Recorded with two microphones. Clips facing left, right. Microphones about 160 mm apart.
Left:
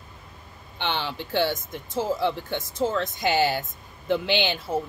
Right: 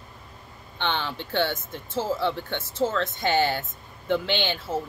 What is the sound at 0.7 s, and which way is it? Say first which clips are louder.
Speech: even; 15° left (ahead or behind).